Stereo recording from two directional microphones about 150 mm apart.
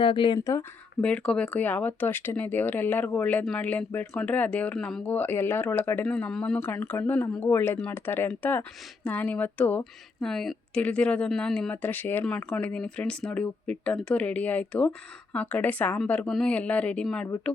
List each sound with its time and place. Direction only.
0.0 s speech: 30° left (ahead or behind)
1.0 s speech: 5° left (ahead or behind)